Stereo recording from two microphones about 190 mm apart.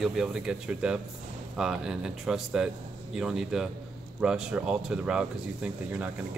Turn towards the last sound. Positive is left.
turn(degrees=-5)  # may be behind; listen again after turning